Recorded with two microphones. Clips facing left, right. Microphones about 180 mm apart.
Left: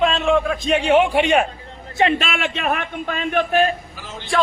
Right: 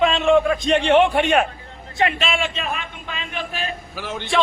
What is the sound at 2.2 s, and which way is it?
A man's voice, 55° left (ahead or behind).